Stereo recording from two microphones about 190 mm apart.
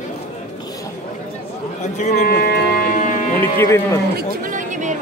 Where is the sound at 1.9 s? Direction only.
40° left (ahead or behind).